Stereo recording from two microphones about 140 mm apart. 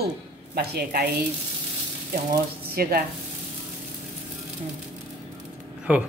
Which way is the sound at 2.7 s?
90° right.